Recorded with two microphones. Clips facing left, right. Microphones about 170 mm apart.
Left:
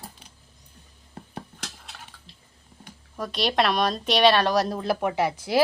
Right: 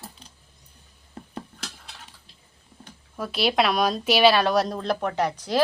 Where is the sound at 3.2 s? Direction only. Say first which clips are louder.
Right 1 dB; 5° right (ahead or behind).